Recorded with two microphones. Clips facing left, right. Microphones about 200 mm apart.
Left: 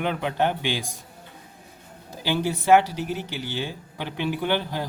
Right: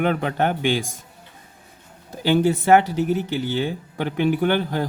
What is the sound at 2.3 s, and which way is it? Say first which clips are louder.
Speech: right 3 dB; 55° right (ahead or behind).